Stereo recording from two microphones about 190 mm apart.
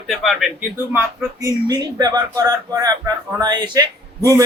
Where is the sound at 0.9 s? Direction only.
15° right (ahead or behind).